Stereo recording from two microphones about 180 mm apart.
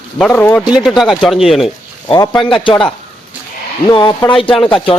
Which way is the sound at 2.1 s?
20° left (ahead or behind).